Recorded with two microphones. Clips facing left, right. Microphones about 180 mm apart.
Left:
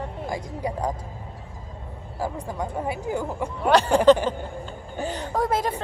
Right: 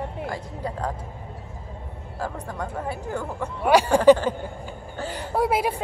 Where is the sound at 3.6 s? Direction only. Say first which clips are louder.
Right 1 dB; 10° right (ahead or behind).